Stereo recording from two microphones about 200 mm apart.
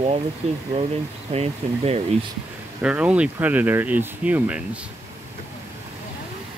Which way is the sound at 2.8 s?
5° right (ahead or behind).